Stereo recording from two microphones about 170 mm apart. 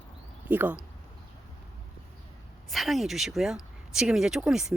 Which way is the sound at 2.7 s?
Centre (ahead or behind).